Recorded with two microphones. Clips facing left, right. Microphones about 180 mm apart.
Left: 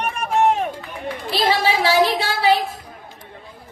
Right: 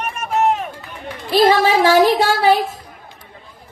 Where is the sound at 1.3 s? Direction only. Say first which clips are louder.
Right 7 dB; 45° right (ahead or behind).